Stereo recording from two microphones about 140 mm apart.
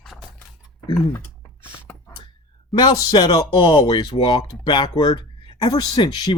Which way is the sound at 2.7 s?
30° left (ahead or behind).